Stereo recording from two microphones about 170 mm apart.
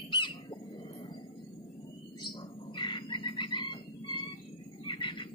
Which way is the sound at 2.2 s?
25° left (ahead or behind).